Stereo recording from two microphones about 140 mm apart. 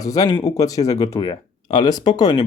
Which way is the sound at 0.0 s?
25° left (ahead or behind).